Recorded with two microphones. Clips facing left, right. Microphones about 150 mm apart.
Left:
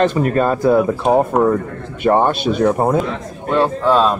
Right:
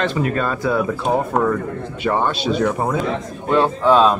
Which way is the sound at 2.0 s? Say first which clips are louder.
Left 6 dB; 50° left (ahead or behind).